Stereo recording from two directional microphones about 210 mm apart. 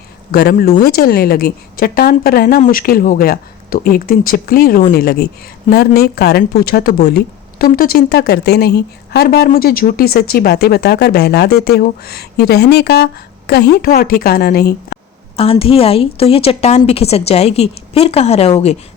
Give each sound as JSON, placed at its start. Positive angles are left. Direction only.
{"t": 0.3, "sound": "a woman's voice", "side_deg": 45}
{"t": 15.4, "sound": "a woman's voice", "side_deg": 25}